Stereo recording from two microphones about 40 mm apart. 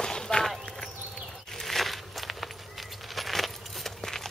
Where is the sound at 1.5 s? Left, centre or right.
Centre.